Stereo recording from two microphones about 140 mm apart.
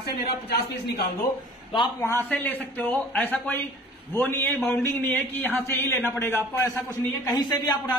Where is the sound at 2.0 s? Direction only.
15° left (ahead or behind).